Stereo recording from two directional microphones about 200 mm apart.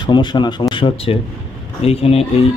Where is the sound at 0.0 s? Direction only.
20° left (ahead or behind).